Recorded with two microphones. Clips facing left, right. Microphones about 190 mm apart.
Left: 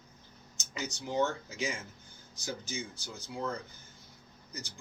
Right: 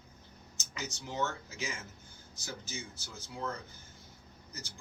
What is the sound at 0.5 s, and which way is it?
Speech, 15° left (ahead or behind).